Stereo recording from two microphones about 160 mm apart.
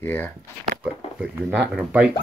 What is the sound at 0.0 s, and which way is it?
Speech, 15° left (ahead or behind).